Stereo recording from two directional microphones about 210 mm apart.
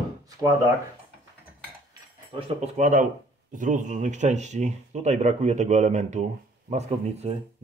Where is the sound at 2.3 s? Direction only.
30° right (ahead or behind).